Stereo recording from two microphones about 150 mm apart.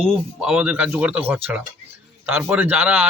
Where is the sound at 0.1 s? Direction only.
5° right (ahead or behind).